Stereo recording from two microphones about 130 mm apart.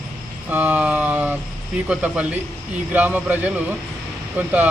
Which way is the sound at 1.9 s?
10° right (ahead or behind).